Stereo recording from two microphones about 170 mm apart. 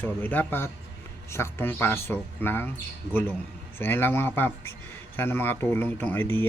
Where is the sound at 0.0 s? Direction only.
10° left (ahead or behind).